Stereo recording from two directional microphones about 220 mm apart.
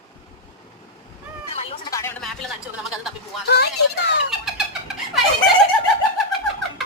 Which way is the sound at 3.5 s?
50° left (ahead or behind).